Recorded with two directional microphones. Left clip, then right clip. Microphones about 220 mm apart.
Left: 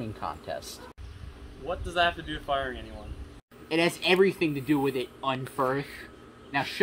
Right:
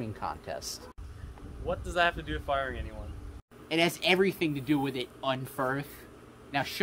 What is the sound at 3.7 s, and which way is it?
Speech, 15° right (ahead or behind).